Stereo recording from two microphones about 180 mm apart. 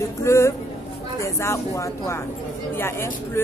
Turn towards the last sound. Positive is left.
turn(degrees=15)  # may be behind; listen again after turning